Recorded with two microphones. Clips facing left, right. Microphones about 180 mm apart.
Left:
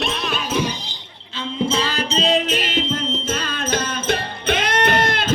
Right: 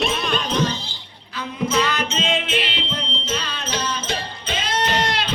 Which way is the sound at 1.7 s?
30° left (ahead or behind).